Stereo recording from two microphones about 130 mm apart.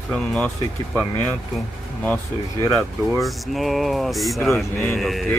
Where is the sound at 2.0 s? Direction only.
15° left (ahead or behind).